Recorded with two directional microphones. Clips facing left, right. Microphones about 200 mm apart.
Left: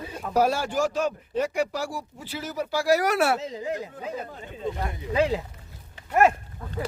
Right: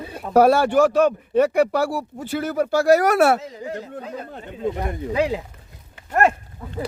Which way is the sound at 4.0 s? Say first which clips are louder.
Right 1 dB; 5° left (ahead or behind).